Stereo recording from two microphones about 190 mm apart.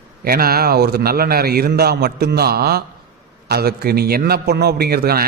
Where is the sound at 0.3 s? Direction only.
50° right (ahead or behind).